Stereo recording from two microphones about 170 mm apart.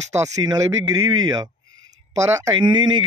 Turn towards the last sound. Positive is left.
turn(degrees=-25)  # may be behind; listen again after turning